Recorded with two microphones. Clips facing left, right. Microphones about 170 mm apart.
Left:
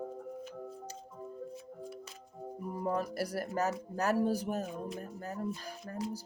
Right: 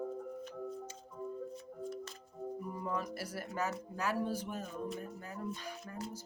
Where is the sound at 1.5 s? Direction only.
5° left (ahead or behind).